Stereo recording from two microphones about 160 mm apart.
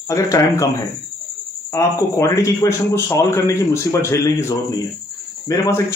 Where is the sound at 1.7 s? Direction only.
20° left (ahead or behind).